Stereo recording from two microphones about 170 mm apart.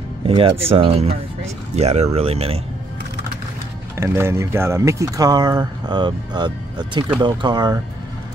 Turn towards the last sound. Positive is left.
turn(degrees=-25)  # may be behind; listen again after turning